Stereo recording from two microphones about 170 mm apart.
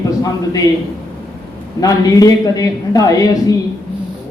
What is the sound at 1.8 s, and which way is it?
A man's voice, 20° left (ahead or behind).